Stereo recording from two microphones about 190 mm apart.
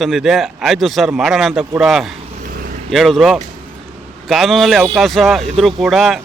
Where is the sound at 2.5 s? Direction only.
50° right (ahead or behind).